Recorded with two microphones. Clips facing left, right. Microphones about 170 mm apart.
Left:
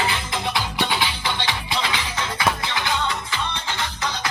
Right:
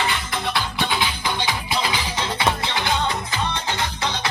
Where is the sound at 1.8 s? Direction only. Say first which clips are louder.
Right 2 dB; 35° right (ahead or behind).